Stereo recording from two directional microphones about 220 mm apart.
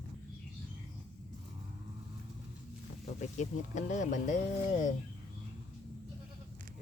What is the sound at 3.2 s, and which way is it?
Speech, 35° left (ahead or behind).